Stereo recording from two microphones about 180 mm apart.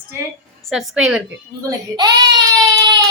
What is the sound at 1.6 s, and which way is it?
A child's voice, 20° right (ahead or behind).